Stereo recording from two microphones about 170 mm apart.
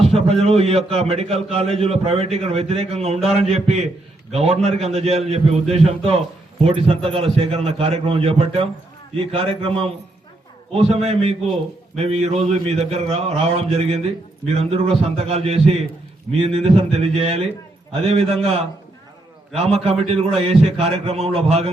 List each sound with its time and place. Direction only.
0.0 s a man's voice: 35° right (ahead or behind)